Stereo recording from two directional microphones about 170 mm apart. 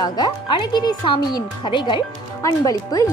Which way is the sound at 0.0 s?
25° left (ahead or behind).